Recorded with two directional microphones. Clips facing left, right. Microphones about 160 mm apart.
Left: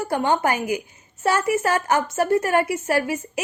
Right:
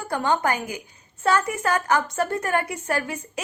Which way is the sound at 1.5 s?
20° left (ahead or behind).